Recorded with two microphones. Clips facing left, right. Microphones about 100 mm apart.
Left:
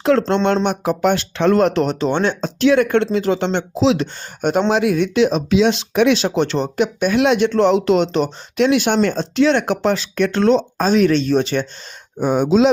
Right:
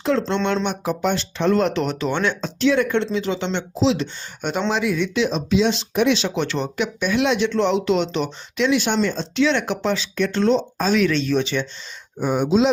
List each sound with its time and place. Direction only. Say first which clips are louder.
0.0 s speech: left 5 dB; 60° left (ahead or behind); by 2.5 s 35° left (ahead or behind)
2.6 s speech: left 5 dB; 55° left (ahead or behind); by 6.1 s 70° left (ahead or behind)
6.1 s speech: left 5 dB; 40° left (ahead or behind); by 10.8 s 65° left (ahead or behind)
10.8 s speech: left 5 dB; 40° left (ahead or behind)
12.2 s speech: left 4 dB; 70° left (ahead or behind)